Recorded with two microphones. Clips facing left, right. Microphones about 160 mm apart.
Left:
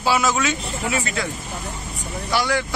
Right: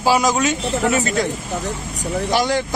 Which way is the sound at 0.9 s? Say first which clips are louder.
Right 5 dB; 45° right (ahead or behind).